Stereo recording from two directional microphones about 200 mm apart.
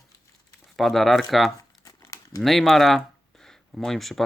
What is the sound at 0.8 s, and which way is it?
Speech, centre (ahead or behind).